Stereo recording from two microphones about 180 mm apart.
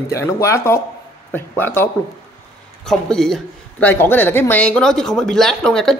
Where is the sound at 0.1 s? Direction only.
15° left (ahead or behind).